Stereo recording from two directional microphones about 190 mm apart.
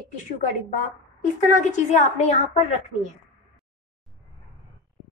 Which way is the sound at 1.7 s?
35° left (ahead or behind).